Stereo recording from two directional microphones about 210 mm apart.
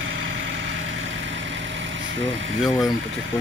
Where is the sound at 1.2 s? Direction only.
60° right (ahead or behind).